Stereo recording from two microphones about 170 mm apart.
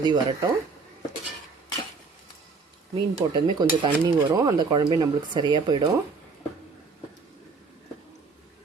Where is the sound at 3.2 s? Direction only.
20° right (ahead or behind).